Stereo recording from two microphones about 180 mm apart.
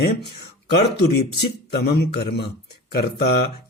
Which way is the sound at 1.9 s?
65° left (ahead or behind).